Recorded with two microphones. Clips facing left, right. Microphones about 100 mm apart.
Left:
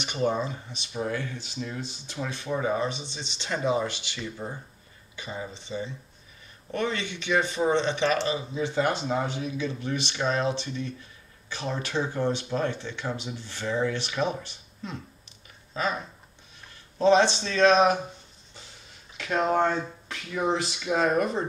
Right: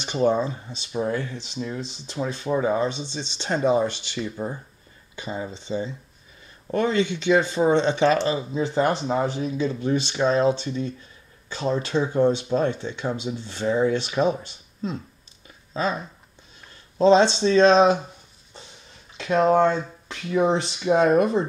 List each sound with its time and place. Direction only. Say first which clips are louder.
0.0 s speech: right 5 dB; 30° right (ahead or behind)
15.7 s speech: right 3 dB; 30° right (ahead or behind)
17.0 s speech: right 4 dB; 25° right (ahead or behind)
19.1 s a sound: right 6 dB; 30° right (ahead or behind)
19.5 s speech: right 5 dB; 30° right (ahead or behind)